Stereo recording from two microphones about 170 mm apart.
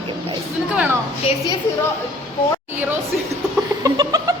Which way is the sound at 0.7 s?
10° right (ahead or behind).